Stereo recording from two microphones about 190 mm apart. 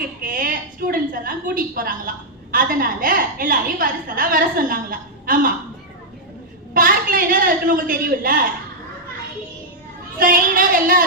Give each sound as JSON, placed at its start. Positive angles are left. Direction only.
{"t": 0.2, "sound": "a woman's voice", "side_deg": -45}
{"t": 6.7, "sound": "a woman's voice", "side_deg": -45}
{"t": 10.2, "sound": "a woman's voice", "side_deg": -45}